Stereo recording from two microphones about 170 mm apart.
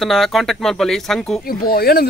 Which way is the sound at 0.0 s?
Centre (ahead or behind).